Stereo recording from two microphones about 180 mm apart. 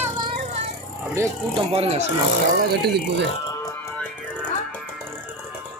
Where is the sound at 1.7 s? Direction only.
35° right (ahead or behind).